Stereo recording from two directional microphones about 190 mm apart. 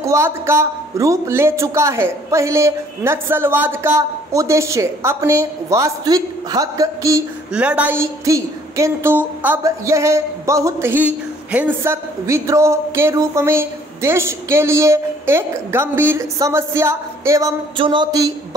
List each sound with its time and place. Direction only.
0.0 s a woman's voice: 15° right (ahead or behind)
7.5 s a woman's voice: 5° right (ahead or behind)
17.7 s a sound: 25° right (ahead or behind)